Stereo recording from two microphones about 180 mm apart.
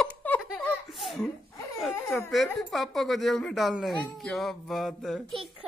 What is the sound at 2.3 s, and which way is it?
A woman's voice, centre (ahead or behind).